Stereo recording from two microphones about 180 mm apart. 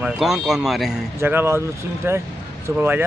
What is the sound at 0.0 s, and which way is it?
Speech, centre (ahead or behind).